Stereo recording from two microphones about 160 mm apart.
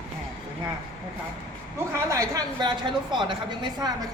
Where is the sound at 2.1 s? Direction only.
20° right (ahead or behind).